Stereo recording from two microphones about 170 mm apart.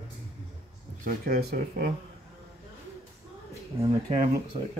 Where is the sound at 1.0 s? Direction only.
60° right (ahead or behind).